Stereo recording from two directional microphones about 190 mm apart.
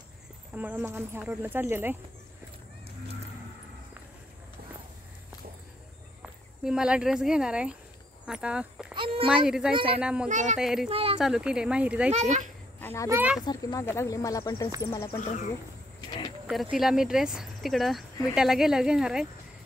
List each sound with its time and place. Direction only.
0.6 s speech: 10° right (ahead or behind)
6.2 s speech: 5° right (ahead or behind)
8.9 s a sound: 25° right (ahead or behind)
9.3 s speech: 5° right (ahead or behind)
10.2 s speech: 40° right (ahead or behind)
10.6 s speech: centre (ahead or behind)
10.9 s speech: 30° right (ahead or behind)
11.1 s speech: 5° right (ahead or behind)
12.1 s speech: 40° right (ahead or behind)
12.8 s a child's voice: 15° left (ahead or behind)
13.1 s speech: 10° right (ahead or behind)
13.4 s speech: 20° left (ahead or behind)
16.7 s speech: centre (ahead or behind)